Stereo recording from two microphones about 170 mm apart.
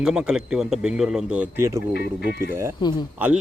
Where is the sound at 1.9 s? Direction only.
70° left (ahead or behind).